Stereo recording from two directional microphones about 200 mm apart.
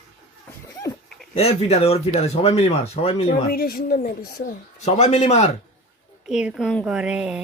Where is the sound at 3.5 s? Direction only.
50° left (ahead or behind).